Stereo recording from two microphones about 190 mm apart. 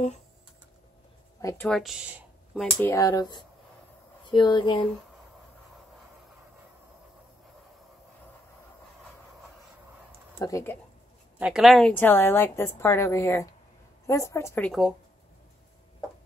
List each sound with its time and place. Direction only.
1.4 s speech: 15° left (ahead or behind)
1.7 s speech: centre (ahead or behind)
2.8 s speech: 15° left (ahead or behind)
10.4 s a woman's voice: 15° left (ahead or behind)
11.3 s a woman's voice: 5° right (ahead or behind)